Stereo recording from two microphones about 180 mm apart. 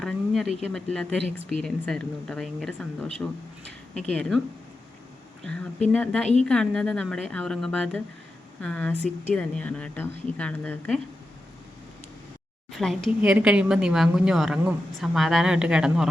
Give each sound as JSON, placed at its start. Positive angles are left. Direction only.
{"t": 0.0, "sound": "speech", "side_deg": 0}
{"t": 4.1, "sound": "speech", "side_deg": 5}
{"t": 5.9, "sound": "speech", "side_deg": 5}
{"t": 12.7, "sound": "speech", "side_deg": 0}